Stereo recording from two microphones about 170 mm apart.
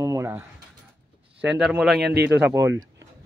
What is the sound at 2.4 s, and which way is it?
Speech, 15° right (ahead or behind).